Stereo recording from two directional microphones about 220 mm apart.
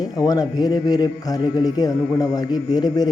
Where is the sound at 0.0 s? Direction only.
15° left (ahead or behind).